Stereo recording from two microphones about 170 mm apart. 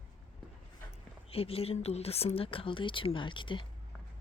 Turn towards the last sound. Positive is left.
turn(degrees=30)  # may be behind; listen again after turning